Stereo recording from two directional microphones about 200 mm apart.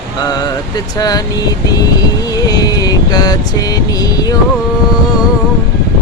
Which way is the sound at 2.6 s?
20° left (ahead or behind).